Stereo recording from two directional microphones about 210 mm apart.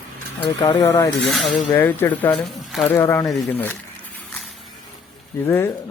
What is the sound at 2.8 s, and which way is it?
Speech, 10° left (ahead or behind).